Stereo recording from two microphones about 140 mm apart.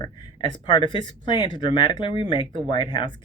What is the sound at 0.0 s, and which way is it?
Speech, 30° left (ahead or behind).